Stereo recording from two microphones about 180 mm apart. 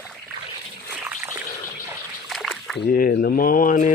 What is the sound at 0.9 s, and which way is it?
Trickle, 10° right (ahead or behind).